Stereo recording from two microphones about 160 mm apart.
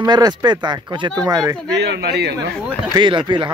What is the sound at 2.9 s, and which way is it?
Speech, 30° right (ahead or behind).